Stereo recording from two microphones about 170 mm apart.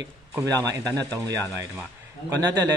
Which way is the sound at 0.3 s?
20° right (ahead or behind).